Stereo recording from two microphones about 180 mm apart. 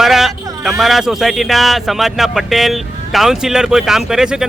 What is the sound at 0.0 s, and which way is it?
Speech, centre (ahead or behind).